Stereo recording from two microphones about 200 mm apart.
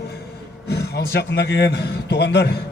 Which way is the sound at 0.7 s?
55° left (ahead or behind).